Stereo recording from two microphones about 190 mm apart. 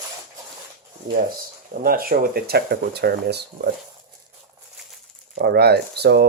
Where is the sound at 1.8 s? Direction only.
50° right (ahead or behind).